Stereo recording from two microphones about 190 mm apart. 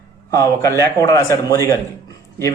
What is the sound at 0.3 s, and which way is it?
A man's voice, 15° left (ahead or behind).